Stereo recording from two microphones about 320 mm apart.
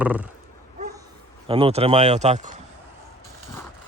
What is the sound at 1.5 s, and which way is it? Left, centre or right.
Speech, centre.